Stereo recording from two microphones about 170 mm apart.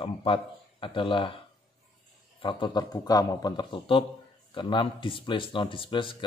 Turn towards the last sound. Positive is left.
turn(degrees=30)  # may be behind; listen again after turning